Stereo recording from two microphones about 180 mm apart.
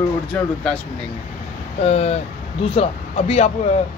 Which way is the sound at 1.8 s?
35° left (ahead or behind).